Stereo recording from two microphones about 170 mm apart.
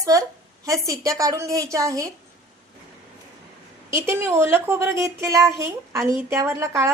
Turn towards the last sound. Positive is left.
turn(degrees=-15)  # may be behind; listen again after turning